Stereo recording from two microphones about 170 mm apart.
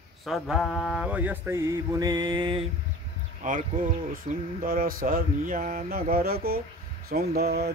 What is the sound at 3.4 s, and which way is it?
Speech, 50° right (ahead or behind).